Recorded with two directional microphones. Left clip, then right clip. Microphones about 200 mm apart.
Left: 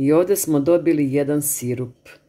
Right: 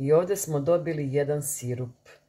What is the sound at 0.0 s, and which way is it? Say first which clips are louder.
Speech: left 6 dB; 45° left (ahead or behind).